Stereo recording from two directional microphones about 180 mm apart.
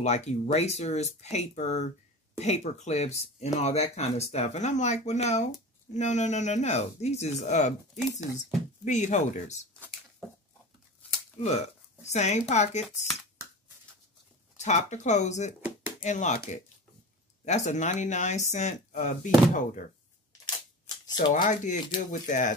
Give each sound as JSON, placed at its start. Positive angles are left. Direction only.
{"t": 0.0, "sound": "speech", "side_deg": 40}
{"t": 11.4, "sound": "speech", "side_deg": 40}
{"t": 12.8, "sound": "speech", "side_deg": 0}
{"t": 14.6, "sound": "speech", "side_deg": 40}
{"t": 21.3, "sound": "speech", "side_deg": 45}